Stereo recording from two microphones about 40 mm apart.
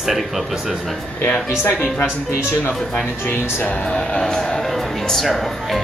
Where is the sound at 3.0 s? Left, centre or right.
Left.